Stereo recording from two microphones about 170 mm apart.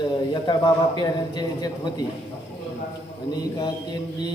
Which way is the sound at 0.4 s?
25° left (ahead or behind).